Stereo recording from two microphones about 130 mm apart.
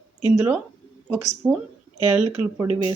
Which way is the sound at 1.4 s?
20° right (ahead or behind).